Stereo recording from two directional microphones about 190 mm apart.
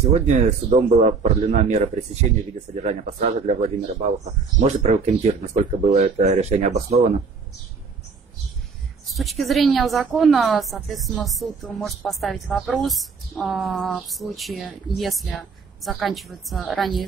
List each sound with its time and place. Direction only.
0.1 s speech: 35° right (ahead or behind)
9.1 s a woman's voice: centre (ahead or behind)